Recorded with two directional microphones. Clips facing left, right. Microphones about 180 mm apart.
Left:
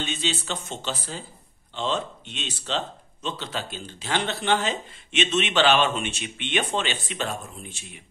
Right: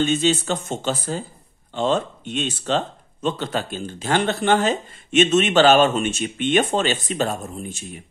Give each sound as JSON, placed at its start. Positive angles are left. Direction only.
{"t": 0.0, "sound": "a man's voice", "side_deg": -45}